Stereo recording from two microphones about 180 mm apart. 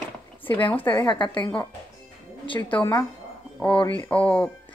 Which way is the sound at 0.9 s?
25° left (ahead or behind).